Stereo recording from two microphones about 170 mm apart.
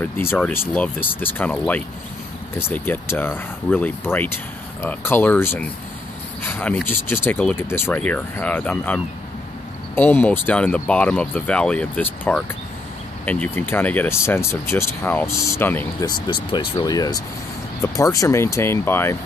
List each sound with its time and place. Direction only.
0.0 s speech: 15° left (ahead or behind)
16.1 s speech: 25° left (ahead or behind)